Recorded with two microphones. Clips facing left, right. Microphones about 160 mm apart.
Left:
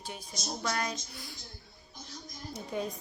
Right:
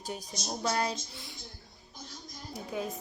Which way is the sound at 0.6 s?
30° right (ahead or behind).